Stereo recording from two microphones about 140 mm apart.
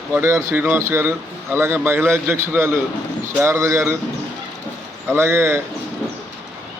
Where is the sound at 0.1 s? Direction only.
20° right (ahead or behind).